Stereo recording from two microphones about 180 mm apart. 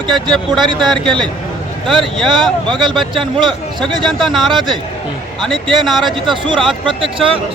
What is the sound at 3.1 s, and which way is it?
Speech, 25° right (ahead or behind).